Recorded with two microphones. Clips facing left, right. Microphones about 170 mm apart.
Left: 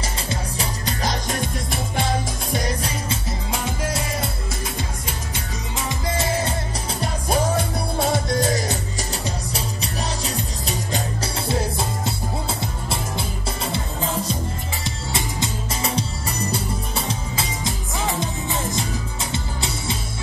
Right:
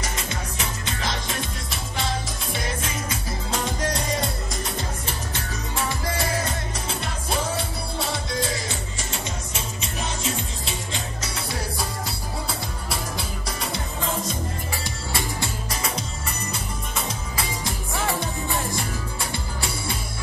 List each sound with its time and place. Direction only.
0.0 s music: 35° left (ahead or behind)
3.5 s music: 5° left (ahead or behind); by 6.5 s 25° left (ahead or behind)
6.9 s music: 40° left (ahead or behind)
12.4 s music: 25° left (ahead or behind)
15.1 s music: 20° left (ahead or behind)
17.6 s music: 20° left (ahead or behind)